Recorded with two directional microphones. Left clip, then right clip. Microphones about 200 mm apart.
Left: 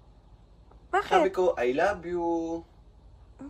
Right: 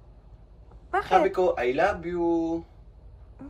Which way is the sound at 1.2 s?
20° left (ahead or behind).